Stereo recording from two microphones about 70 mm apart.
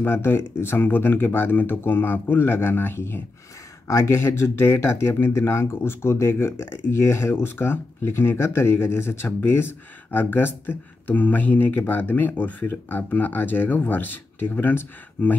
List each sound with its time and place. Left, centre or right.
0.0 s speech: left
3.8 s speech: left